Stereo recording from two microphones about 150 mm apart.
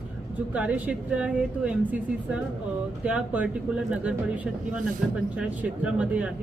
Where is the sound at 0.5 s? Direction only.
10° right (ahead or behind).